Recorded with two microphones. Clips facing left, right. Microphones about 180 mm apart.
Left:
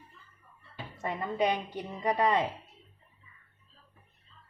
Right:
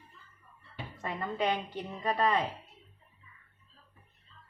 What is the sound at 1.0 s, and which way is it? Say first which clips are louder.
A woman's voice: left 3 dB; 15° left (ahead or behind).